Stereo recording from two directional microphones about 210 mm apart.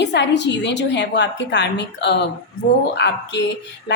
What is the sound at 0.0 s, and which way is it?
A woman's voice, 55° left (ahead or behind).